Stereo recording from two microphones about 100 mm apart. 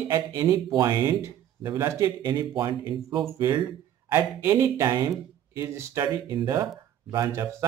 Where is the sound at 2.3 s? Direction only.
45° right (ahead or behind).